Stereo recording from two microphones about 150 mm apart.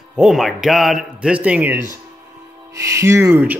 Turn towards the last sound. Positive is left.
turn(degrees=-15)  # may be behind; listen again after turning